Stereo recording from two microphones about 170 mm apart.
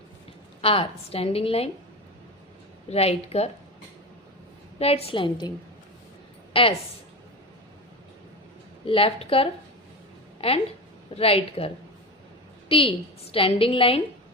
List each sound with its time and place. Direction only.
0.6 s a woman's voice: 35° left (ahead or behind)
2.9 s a woman's voice: 35° left (ahead or behind)
4.8 s a woman's voice: 35° left (ahead or behind)
6.5 s a woman's voice: 35° left (ahead or behind)
8.9 s a woman's voice: 35° left (ahead or behind)